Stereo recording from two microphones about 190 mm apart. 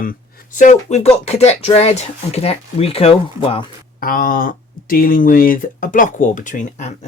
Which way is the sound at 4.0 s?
50° left (ahead or behind).